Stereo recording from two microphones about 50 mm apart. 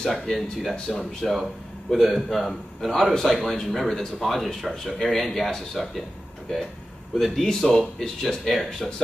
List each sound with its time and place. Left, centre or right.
0.0 s a man's voice: centre
7.2 s a man's voice: centre